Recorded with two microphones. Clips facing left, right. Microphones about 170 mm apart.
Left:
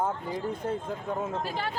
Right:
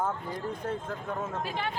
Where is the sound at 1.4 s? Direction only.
40° left (ahead or behind).